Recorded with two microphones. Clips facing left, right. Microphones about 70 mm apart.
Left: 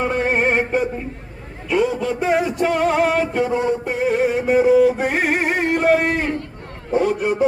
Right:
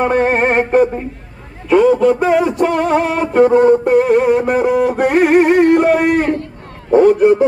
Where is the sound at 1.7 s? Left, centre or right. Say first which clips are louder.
Right 9 dB; right.